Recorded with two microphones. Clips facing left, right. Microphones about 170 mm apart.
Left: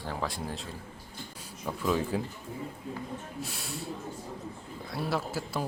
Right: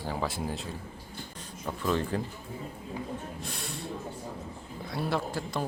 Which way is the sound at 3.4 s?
5° left (ahead or behind).